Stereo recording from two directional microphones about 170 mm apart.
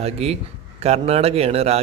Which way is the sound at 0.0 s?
35° right (ahead or behind).